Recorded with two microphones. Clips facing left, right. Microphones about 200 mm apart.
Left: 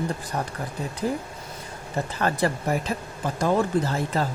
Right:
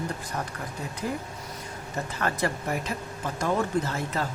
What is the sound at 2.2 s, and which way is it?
Speech, 35° left (ahead or behind).